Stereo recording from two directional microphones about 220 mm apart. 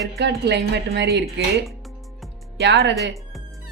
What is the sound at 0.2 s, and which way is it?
Speech, 50° right (ahead or behind).